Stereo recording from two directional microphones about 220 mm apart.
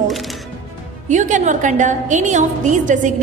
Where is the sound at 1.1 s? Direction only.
35° right (ahead or behind).